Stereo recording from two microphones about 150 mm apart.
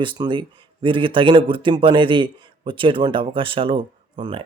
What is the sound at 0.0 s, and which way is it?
Speech, 30° right (ahead or behind).